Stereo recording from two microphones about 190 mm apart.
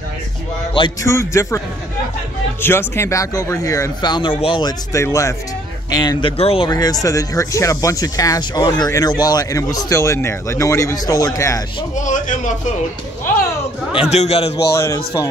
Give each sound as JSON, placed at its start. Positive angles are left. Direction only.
{"t": 0.7, "sound": "speech", "side_deg": 20}
{"t": 2.6, "sound": "speech", "side_deg": 10}
{"t": 6.3, "sound": "speech", "side_deg": 30}
{"t": 11.9, "sound": "a man's voice", "side_deg": 40}
{"t": 13.9, "sound": "a man's voice", "side_deg": 35}